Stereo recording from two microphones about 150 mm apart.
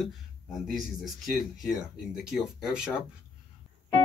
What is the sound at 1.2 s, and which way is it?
Speech, centre (ahead or behind).